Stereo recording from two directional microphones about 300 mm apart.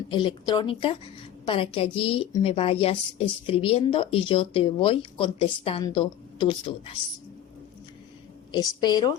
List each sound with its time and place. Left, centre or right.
0.1 s speech: centre
8.5 s speech: centre